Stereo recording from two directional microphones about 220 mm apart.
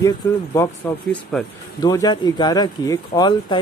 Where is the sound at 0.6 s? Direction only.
10° left (ahead or behind).